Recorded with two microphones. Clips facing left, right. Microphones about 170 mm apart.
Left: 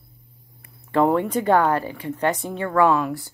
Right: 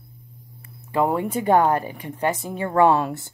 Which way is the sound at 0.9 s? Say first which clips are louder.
Left 3 dB; 10° right (ahead or behind).